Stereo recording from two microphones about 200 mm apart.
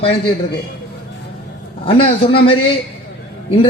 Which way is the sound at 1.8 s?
30° left (ahead or behind).